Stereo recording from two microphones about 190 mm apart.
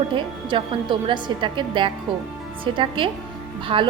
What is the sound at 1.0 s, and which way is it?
A woman's voice, 25° right (ahead or behind).